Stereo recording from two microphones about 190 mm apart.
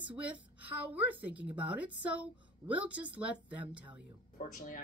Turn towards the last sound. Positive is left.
turn(degrees=45)  # may be behind; listen again after turning